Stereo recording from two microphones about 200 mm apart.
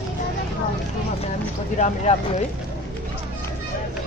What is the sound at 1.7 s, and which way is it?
Speech, 35° left (ahead or behind).